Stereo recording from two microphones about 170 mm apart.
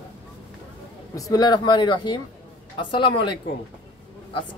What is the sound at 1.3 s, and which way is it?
Speech, 25° left (ahead or behind).